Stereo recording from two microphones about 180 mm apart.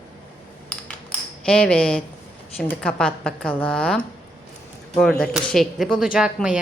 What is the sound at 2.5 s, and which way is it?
Speech, 5° left (ahead or behind).